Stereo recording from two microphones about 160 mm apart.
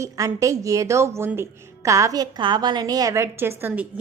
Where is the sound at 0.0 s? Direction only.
20° right (ahead or behind).